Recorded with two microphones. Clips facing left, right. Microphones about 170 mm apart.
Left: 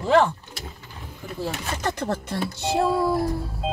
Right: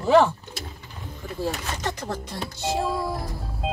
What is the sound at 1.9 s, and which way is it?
Music, 60° left (ahead or behind).